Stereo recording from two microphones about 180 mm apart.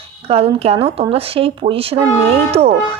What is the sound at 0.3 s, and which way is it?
A woman's voice, 35° right (ahead or behind).